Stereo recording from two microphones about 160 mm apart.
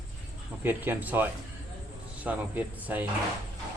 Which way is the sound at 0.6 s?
10° right (ahead or behind).